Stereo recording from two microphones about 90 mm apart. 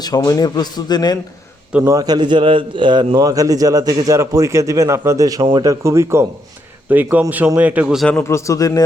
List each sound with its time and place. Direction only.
0.0 s a man's voice: 45° left (ahead or behind)
1.9 s a man's voice: 45° right (ahead or behind); by 3.2 s 60° right (ahead or behind)
3.2 s a man's voice: 40° right (ahead or behind)
5.4 s a man's voice: 65° right (ahead or behind)
5.6 s a man's voice: 35° right (ahead or behind)
6.9 s speech: 20° right (ahead or behind)
8.2 s speech: 30° left (ahead or behind)